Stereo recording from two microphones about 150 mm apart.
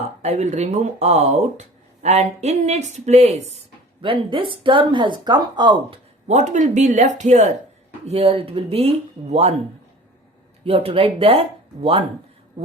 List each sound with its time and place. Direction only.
0.2 s speech: 50° right (ahead or behind)
4.0 s speech: 35° right (ahead or behind)
6.2 s speech: 55° right (ahead or behind)
10.6 s speech: 40° right (ahead or behind)